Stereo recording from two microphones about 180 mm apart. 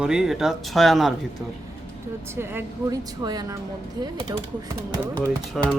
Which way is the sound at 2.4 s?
15° right (ahead or behind).